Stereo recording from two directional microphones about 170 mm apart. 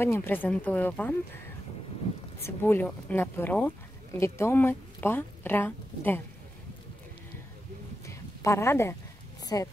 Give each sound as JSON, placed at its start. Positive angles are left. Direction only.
{"t": 0.0, "sound": "speech", "side_deg": 15}
{"t": 2.4, "sound": "speech", "side_deg": 15}
{"t": 8.1, "sound": "a sound", "side_deg": 15}